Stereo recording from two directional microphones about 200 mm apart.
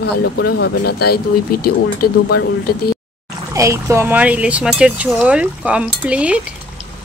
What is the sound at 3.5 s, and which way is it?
Speech, 15° right (ahead or behind).